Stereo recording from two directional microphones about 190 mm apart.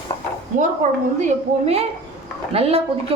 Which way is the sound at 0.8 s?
40° right (ahead or behind).